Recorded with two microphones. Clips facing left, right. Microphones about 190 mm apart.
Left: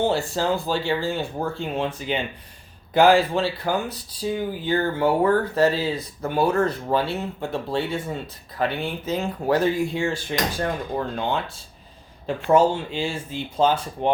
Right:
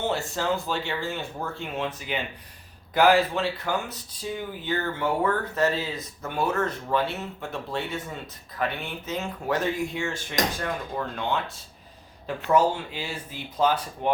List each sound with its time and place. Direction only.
0.0 s speech: 30° left (ahead or behind)